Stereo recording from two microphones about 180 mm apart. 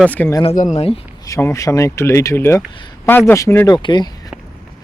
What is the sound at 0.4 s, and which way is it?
Speech, 45° left (ahead or behind).